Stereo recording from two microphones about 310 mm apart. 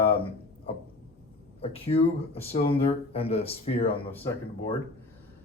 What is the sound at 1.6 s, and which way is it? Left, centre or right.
Speech, centre.